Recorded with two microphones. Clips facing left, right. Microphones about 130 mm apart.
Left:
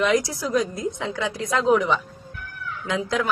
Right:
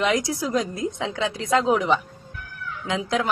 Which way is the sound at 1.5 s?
20° right (ahead or behind).